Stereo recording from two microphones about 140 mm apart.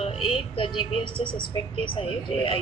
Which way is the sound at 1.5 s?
40° left (ahead or behind).